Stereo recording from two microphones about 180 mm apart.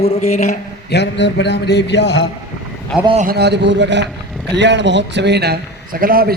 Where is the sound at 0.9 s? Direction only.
75° left (ahead or behind).